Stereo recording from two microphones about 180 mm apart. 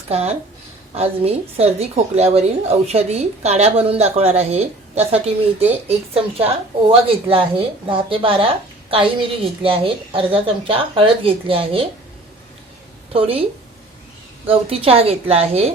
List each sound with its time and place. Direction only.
0.1 s a woman's voice: 35° right (ahead or behind)
13.1 s a woman's voice: 30° right (ahead or behind)
14.4 s a woman's voice: 30° right (ahead or behind)